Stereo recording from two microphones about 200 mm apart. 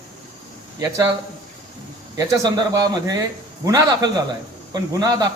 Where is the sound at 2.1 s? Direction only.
20° right (ahead or behind).